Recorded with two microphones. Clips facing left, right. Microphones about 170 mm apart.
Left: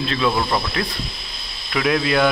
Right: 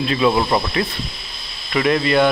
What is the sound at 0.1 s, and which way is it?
Speech, 10° right (ahead or behind).